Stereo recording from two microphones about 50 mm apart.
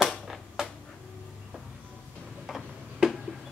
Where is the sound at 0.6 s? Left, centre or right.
Centre.